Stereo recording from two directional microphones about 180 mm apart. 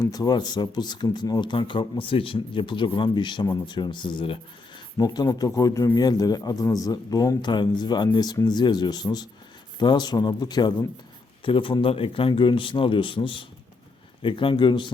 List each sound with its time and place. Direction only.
0.0 s speech: 20° left (ahead or behind)